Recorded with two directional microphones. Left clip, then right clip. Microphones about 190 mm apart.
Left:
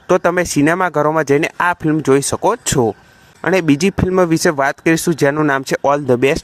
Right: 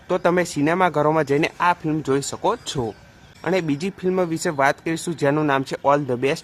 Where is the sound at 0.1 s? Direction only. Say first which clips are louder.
Left 6 dB; 40° left (ahead or behind).